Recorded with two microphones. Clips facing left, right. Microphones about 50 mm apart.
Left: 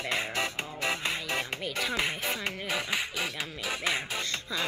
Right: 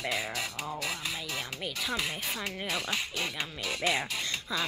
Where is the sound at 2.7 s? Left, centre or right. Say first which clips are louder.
Left 2 dB; centre.